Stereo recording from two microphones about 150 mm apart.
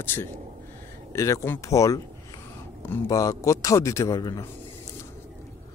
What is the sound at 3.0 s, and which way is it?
Speech, 20° left (ahead or behind).